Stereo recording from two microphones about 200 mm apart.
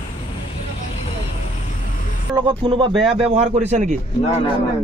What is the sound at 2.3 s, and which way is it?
Speech, 25° right (ahead or behind).